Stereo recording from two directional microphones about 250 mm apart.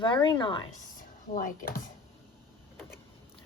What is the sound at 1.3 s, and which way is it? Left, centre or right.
Speech, left.